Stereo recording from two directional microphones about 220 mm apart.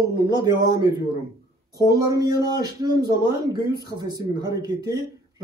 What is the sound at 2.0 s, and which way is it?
Speech, 15° right (ahead or behind).